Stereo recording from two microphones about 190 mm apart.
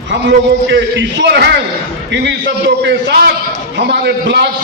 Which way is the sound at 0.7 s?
70° right (ahead or behind).